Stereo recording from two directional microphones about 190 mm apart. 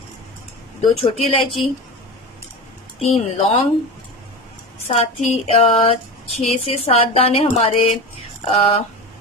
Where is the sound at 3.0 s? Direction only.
30° left (ahead or behind).